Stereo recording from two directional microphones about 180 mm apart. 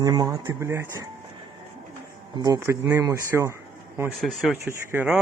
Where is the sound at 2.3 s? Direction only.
20° right (ahead or behind).